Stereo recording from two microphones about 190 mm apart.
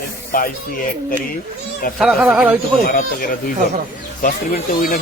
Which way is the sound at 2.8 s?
50° left (ahead or behind).